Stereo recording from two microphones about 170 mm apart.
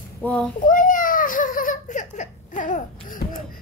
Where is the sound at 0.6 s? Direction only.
50° left (ahead or behind).